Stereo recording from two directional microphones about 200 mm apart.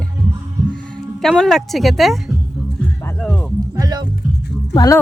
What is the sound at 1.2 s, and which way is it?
Speech, centre (ahead or behind).